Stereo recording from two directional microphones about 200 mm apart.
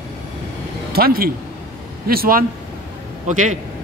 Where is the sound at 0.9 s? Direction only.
50° right (ahead or behind).